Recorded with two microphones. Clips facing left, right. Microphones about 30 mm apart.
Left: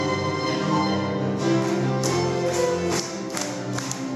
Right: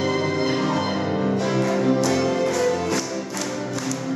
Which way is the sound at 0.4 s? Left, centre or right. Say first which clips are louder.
Right 1 dB; centre.